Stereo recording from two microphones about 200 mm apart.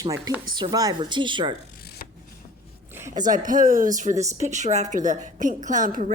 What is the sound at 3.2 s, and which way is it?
A woman's voice, 40° right (ahead or behind).